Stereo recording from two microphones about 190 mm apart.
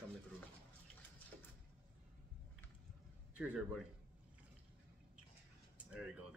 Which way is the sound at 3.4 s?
5° right (ahead or behind).